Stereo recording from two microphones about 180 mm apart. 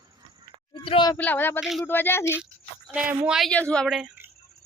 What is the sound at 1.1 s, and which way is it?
Speech, 10° left (ahead or behind).